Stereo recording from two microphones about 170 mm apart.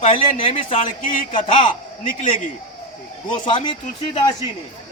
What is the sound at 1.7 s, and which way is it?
Speech, 50° left (ahead or behind).